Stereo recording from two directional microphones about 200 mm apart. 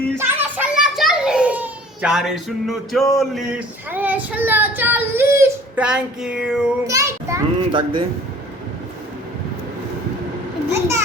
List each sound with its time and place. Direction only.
0.2 s a child's voice: 10° right (ahead or behind)
6.8 s a child's voice: 15° right (ahead or behind)
10.7 s children playing: 15° right (ahead or behind)